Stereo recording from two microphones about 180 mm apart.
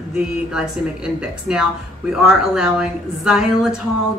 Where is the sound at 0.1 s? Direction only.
5° right (ahead or behind).